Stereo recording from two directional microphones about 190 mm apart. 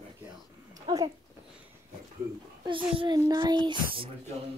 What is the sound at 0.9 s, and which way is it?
Speech, 25° right (ahead or behind).